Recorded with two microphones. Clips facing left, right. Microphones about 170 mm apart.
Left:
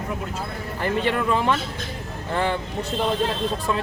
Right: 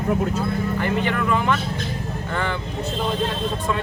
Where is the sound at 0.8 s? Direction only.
30° left (ahead or behind).